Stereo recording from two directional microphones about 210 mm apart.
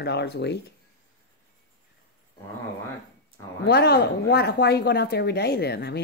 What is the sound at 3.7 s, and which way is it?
Speech, 50° left (ahead or behind).